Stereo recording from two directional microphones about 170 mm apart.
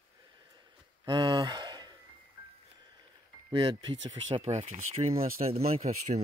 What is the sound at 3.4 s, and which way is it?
Speech, 25° right (ahead or behind).